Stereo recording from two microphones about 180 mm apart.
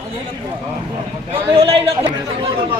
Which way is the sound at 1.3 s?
30° right (ahead or behind).